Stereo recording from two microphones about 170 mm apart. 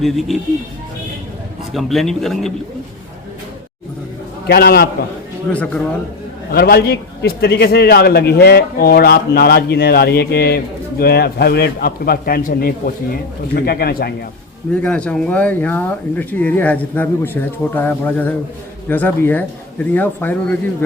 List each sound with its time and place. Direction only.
0.0 s speech: centre (ahead or behind)
1.7 s speech: centre (ahead or behind)
4.4 s a man's voice: 65° left (ahead or behind)
5.5 s speech: 10° left (ahead or behind)
6.5 s a man's voice: 65° left (ahead or behind)
14.7 s speech: 5° left (ahead or behind)